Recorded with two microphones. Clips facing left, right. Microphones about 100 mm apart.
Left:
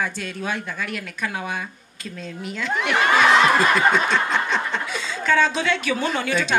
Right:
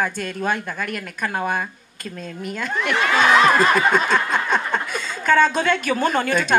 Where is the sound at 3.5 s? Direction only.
45° right (ahead or behind).